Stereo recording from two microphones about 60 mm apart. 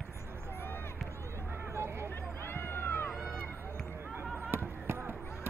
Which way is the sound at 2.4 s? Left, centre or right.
Left.